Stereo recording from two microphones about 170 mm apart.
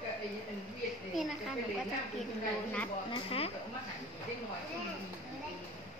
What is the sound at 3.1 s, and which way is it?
Speech, 35° left (ahead or behind).